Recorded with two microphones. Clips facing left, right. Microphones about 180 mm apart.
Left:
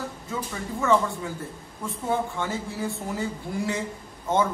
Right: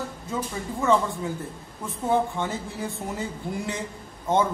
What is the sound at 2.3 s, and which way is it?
A man's voice, 20° right (ahead or behind).